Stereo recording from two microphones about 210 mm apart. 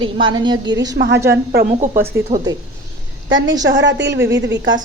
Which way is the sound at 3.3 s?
65° right (ahead or behind).